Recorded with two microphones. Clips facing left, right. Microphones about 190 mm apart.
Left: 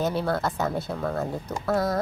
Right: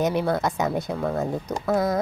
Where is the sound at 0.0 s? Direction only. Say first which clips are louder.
Right 3 dB; 15° right (ahead or behind).